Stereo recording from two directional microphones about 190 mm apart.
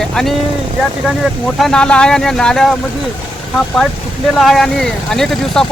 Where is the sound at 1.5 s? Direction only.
Centre (ahead or behind).